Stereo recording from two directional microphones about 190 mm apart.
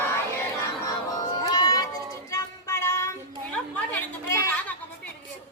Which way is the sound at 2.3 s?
15° left (ahead or behind).